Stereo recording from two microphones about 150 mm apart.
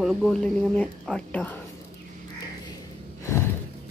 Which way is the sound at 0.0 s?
Centre (ahead or behind).